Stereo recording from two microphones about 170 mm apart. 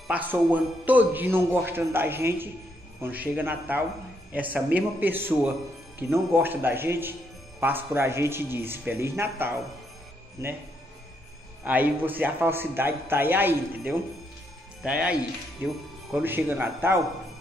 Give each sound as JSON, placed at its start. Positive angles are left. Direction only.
{"t": 0.1, "sound": "speech", "side_deg": -10}
{"t": 11.6, "sound": "speech", "side_deg": -10}